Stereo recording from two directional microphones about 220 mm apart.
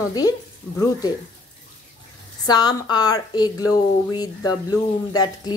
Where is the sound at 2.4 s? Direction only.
20° left (ahead or behind).